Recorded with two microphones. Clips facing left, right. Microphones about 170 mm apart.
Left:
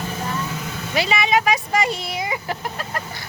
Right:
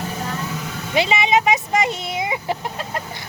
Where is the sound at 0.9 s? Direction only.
25° right (ahead or behind).